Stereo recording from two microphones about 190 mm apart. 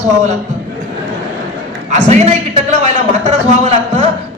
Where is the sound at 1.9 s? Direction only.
35° right (ahead or behind).